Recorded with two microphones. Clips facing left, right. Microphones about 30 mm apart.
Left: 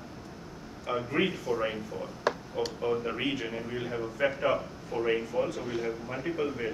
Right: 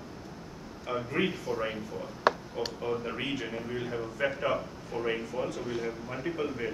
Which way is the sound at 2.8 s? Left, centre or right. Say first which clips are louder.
Left 4 dB; centre.